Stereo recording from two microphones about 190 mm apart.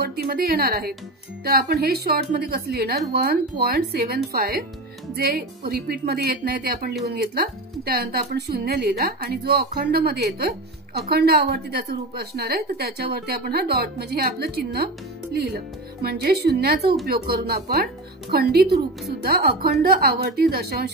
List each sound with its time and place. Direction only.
0.0 s a woman's voice: 55° right (ahead or behind)